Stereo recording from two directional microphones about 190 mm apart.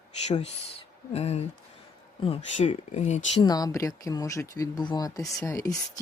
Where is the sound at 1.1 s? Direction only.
35° left (ahead or behind).